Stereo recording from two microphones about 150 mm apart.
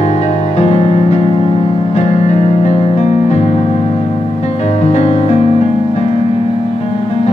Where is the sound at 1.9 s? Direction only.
50° left (ahead or behind).